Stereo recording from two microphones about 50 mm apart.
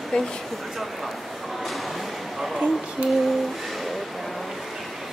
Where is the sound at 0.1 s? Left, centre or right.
Centre.